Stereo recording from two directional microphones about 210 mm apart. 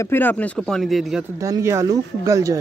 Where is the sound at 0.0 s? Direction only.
10° left (ahead or behind).